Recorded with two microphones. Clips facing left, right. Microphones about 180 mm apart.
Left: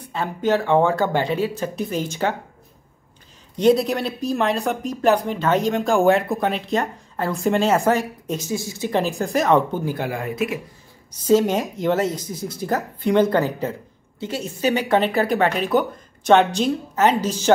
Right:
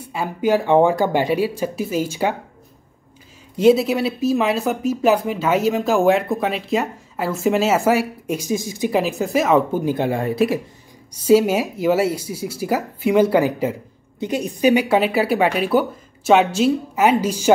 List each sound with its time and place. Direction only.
0.0 s speech: 10° right (ahead or behind)
3.5 s speech: 5° right (ahead or behind)
9.0 s speech: centre (ahead or behind)
9.8 s speech: 25° right (ahead or behind)
11.2 s speech: 10° right (ahead or behind)